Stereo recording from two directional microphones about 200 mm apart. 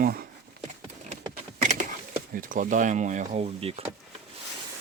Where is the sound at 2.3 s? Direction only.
40° right (ahead or behind).